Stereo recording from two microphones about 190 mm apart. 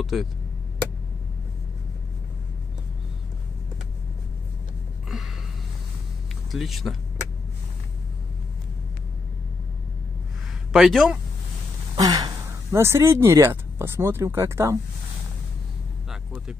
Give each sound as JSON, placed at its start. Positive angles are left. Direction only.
{"t": 0.0, "sound": "speech", "side_deg": 0}
{"t": 5.1, "sound": "a sound", "side_deg": 0}
{"t": 6.5, "sound": "speech", "side_deg": 0}
{"t": 10.7, "sound": "speech", "side_deg": 0}
{"t": 11.9, "sound": "speech", "side_deg": -20}
{"t": 16.1, "sound": "vehicle", "side_deg": 0}